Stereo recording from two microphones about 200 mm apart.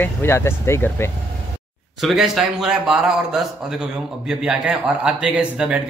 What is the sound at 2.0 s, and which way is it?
A man's voice, centre (ahead or behind).